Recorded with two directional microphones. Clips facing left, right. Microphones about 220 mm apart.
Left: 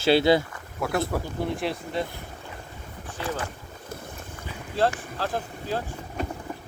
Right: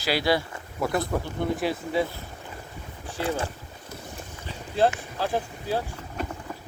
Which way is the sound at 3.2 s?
30° right (ahead or behind).